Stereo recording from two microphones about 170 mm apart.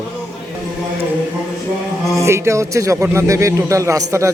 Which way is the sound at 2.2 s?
15° right (ahead or behind).